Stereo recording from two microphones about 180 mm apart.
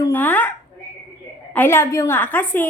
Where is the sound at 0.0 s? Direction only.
10° left (ahead or behind).